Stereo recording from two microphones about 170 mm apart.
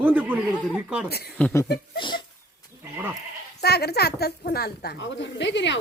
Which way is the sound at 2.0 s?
25° left (ahead or behind).